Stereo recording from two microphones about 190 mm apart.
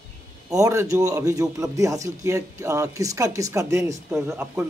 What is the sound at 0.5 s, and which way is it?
A man's voice, 15° right (ahead or behind).